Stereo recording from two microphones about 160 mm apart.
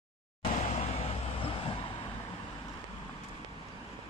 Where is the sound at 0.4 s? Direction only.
40° left (ahead or behind).